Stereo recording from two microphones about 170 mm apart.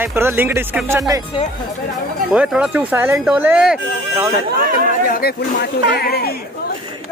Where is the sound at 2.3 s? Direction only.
5° right (ahead or behind).